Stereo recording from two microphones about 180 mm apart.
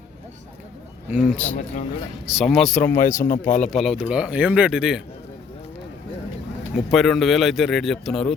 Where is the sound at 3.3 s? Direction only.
45° left (ahead or behind).